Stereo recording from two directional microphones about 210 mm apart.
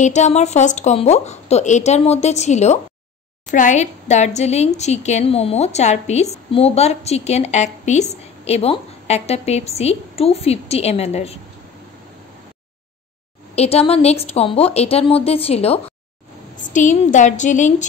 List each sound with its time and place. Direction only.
0.0 s a woman's voice: 35° left (ahead or behind)
13.6 s a woman's voice: 30° left (ahead or behind)